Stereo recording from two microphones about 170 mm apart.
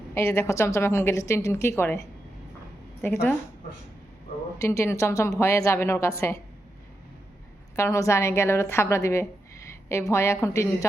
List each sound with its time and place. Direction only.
0.1 s a woman's voice: 15° left (ahead or behind)
4.6 s a woman's voice: 15° left (ahead or behind)
7.8 s a woman's voice: 20° left (ahead or behind)